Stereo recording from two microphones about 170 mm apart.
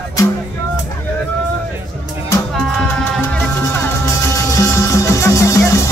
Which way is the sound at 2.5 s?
5° left (ahead or behind).